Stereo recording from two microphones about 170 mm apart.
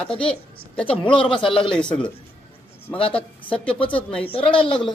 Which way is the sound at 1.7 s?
5° left (ahead or behind).